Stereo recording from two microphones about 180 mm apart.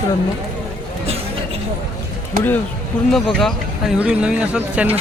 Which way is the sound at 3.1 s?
Centre (ahead or behind).